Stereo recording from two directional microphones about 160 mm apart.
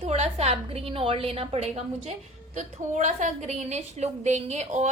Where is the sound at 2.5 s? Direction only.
50° right (ahead or behind).